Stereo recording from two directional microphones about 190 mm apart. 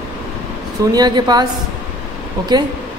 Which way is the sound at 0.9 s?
20° right (ahead or behind).